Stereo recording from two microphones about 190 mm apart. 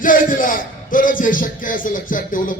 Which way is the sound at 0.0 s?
45° left (ahead or behind).